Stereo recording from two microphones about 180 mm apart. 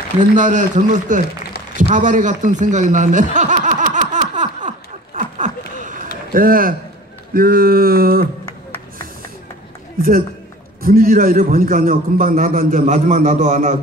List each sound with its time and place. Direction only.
0.4 s a man's voice: 45° right (ahead or behind)
1.8 s chuckle: 45° right (ahead or behind)
6.3 s a man's voice: 50° right (ahead or behind)
7.3 s a sound: 55° right (ahead or behind)
10.8 s a man's voice: 55° right (ahead or behind)